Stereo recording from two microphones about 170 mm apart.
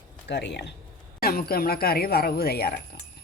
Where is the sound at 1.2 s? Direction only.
60° left (ahead or behind).